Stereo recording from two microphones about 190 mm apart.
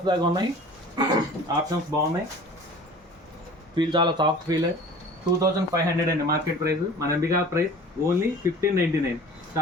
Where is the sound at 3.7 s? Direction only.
25° right (ahead or behind).